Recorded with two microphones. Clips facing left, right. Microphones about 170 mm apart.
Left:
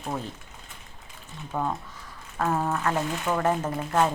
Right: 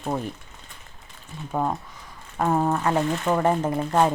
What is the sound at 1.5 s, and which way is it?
Speech, 15° right (ahead or behind).